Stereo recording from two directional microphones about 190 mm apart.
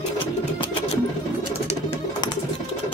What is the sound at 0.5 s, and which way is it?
Music, 25° left (ahead or behind).